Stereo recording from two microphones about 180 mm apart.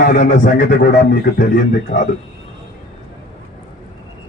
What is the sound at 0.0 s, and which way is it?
Speech, 55° left (ahead or behind).